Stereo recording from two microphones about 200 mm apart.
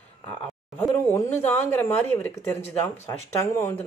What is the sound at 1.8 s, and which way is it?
A woman's voice, 10° left (ahead or behind).